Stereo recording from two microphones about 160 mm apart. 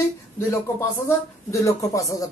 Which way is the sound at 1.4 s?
20° left (ahead or behind).